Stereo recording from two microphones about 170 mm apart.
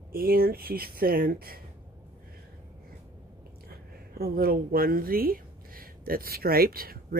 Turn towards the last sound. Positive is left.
turn(degrees=-60)  # may be behind; listen again after turning